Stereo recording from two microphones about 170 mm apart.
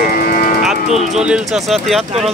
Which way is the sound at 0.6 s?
Centre (ahead or behind).